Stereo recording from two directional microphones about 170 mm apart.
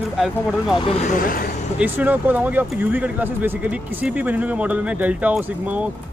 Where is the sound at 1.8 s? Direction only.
10° right (ahead or behind).